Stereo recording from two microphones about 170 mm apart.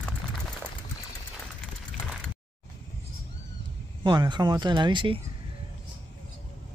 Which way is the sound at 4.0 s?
25° right (ahead or behind).